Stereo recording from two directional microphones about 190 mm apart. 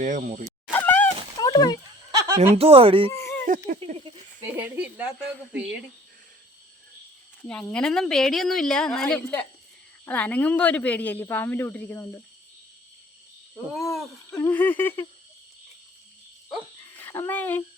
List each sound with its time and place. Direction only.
0.0 s speech: 45° right (ahead or behind)
0.7 s a sound: 10° left (ahead or behind)
2.1 s chuckle: 15° right (ahead or behind)
2.5 s speech: 30° right (ahead or behind)
3.1 s a sound: 15° left (ahead or behind)
4.5 s speech: 10° right (ahead or behind)
7.4 s speech: 5° left (ahead or behind)
14.3 s speech: 10° left (ahead or behind)
17.0 s a child's voice: 10° left (ahead or behind)